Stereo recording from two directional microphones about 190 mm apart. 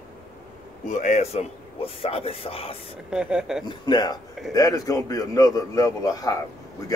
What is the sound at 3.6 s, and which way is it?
A man's voice, 20° left (ahead or behind).